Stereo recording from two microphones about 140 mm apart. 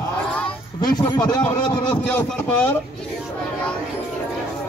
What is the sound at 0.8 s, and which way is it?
Speech, 30° left (ahead or behind).